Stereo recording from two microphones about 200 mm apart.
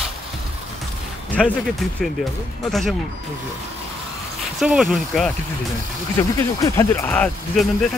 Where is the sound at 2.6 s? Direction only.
Centre (ahead or behind).